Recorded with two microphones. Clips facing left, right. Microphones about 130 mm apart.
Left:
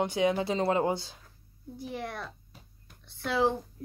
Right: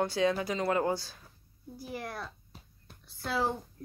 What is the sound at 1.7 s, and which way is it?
A woman's voice, centre (ahead or behind).